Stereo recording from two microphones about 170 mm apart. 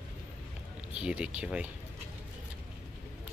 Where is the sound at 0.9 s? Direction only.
5° right (ahead or behind).